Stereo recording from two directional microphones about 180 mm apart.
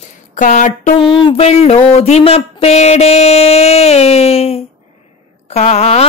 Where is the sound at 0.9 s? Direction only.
30° left (ahead or behind).